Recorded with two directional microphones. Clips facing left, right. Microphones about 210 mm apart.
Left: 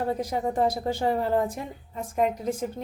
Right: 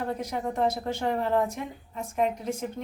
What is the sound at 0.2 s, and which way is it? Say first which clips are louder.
A woman's voice: left 3 dB; 30° left (ahead or behind).